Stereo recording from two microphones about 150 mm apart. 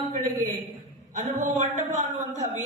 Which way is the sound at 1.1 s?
60° right (ahead or behind).